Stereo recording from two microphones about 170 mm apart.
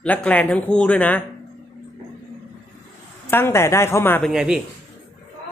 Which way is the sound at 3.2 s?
15° left (ahead or behind).